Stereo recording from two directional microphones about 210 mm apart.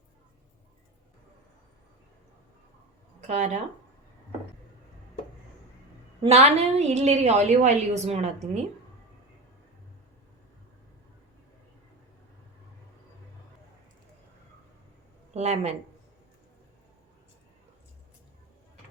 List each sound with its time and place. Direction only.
3.2 s speech: 35° right (ahead or behind)
6.2 s a woman's voice: 30° right (ahead or behind)
15.3 s speech: 30° right (ahead or behind)